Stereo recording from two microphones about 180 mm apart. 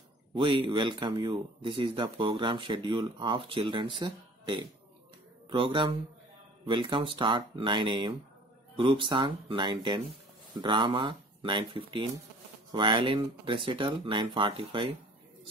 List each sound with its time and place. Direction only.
0.3 s speech: 30° right (ahead or behind)